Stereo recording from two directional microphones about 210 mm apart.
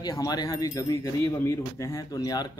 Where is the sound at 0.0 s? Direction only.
15° left (ahead or behind).